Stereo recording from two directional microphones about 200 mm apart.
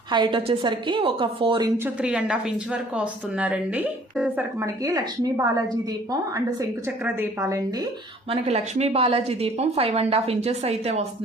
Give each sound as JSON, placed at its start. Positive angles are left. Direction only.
{"t": 0.1, "sound": "a woman's voice", "side_deg": -25}
{"t": 2.0, "sound": "a woman's voice", "side_deg": -5}
{"t": 8.3, "sound": "a woman's voice", "side_deg": -30}